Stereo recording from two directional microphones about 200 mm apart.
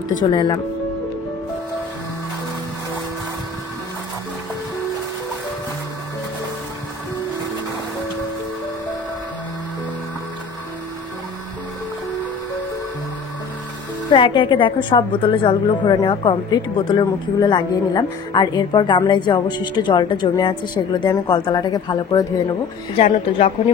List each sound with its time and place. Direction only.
0.3 s a woman's voice: 20° left (ahead or behind)
14.1 s a woman's voice: 25° left (ahead or behind)